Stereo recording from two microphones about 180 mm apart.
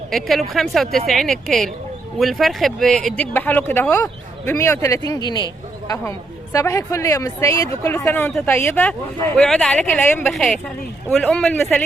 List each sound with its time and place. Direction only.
0.1 s speech: centre (ahead or behind)